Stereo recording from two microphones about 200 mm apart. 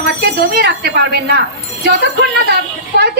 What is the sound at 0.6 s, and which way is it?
A woman's voice, 55° right (ahead or behind).